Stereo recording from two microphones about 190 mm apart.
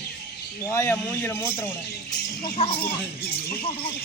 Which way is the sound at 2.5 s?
35° left (ahead or behind).